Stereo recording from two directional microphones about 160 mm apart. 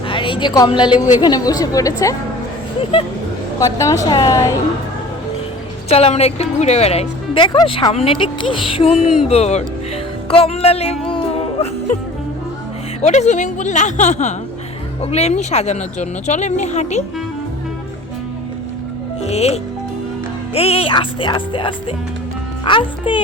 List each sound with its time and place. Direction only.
0.1 s a woman's voice: 30° left (ahead or behind)
3.6 s a woman's voice: 20° left (ahead or behind)
5.9 s speech: 40° left (ahead or behind)
11.1 s music: 40° left (ahead or behind)
13.0 s speech: 45° left (ahead or behind)
19.2 s speech: 40° left (ahead or behind)